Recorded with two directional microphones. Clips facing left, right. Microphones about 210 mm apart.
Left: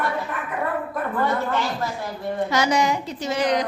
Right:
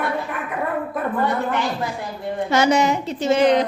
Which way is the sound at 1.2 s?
15° right (ahead or behind).